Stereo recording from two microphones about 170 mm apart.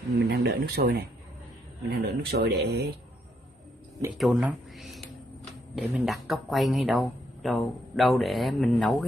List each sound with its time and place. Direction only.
0.3 s speech: 70° right (ahead or behind)
4.2 s speech: 5° right (ahead or behind)